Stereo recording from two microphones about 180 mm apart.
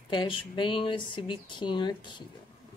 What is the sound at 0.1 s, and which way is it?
Speech, 25° left (ahead or behind).